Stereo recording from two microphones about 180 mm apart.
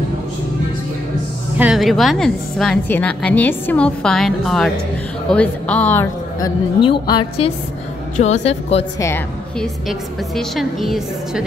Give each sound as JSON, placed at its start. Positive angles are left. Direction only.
{"t": 1.6, "sound": "a woman's voice", "side_deg": 0}
{"t": 6.8, "sound": "a woman's voice", "side_deg": 25}
{"t": 9.6, "sound": "a woman's voice", "side_deg": 0}